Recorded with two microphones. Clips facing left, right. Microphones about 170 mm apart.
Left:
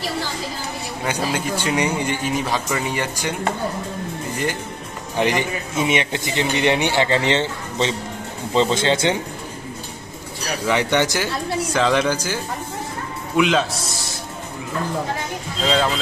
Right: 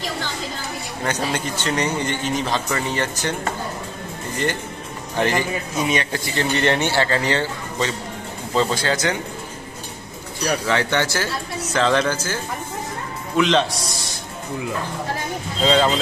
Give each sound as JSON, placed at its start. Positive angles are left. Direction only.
{"t": 1.0, "sound": "speech", "side_deg": 10}
{"t": 5.1, "sound": "a man's voice", "side_deg": 15}
{"t": 10.7, "sound": "speech", "side_deg": 15}
{"t": 13.4, "sound": "a man's voice", "side_deg": 5}
{"t": 15.6, "sound": "a man's voice", "side_deg": 0}